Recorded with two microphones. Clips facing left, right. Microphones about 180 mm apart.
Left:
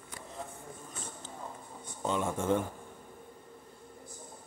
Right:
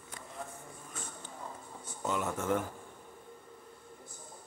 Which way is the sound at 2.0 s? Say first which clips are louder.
Left 2 dB; 25° left (ahead or behind).